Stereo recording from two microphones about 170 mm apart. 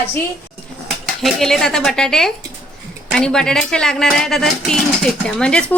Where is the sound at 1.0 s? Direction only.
Centre (ahead or behind).